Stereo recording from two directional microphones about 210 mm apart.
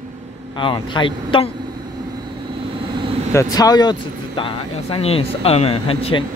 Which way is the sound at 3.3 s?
15° left (ahead or behind).